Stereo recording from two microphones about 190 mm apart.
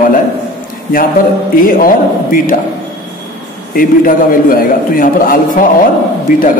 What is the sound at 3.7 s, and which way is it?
A man's voice, 50° left (ahead or behind).